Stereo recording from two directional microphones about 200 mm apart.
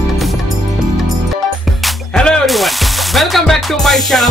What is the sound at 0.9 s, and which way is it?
Music, centre (ahead or behind).